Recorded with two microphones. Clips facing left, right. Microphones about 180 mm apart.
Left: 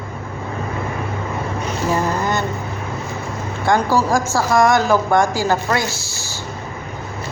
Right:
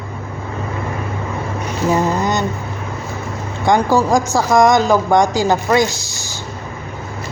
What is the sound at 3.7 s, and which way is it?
A woman's voice, 15° right (ahead or behind).